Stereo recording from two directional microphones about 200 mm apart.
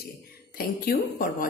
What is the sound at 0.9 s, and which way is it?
Speech, 45° left (ahead or behind).